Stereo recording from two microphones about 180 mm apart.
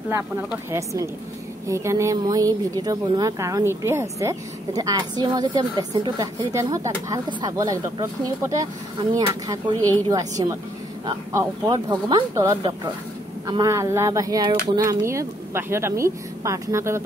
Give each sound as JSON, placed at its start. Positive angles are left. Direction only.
{"t": 0.1, "sound": "speech", "side_deg": -15}